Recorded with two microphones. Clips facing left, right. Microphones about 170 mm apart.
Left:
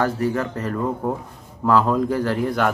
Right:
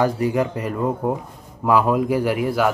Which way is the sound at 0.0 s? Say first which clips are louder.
Right 2 dB; 15° right (ahead or behind).